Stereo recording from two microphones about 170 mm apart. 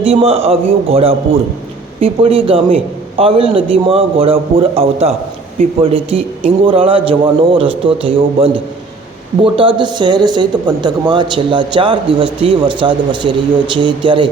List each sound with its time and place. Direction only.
0.0 s a man's voice: 35° right (ahead or behind)